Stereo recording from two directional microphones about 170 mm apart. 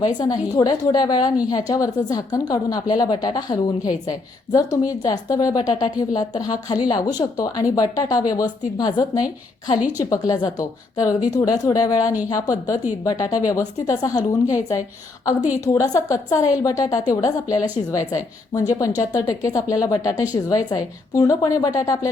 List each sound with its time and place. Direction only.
0.2 s a woman's voice: 25° left (ahead or behind)
15.6 s a woman's voice: 20° left (ahead or behind)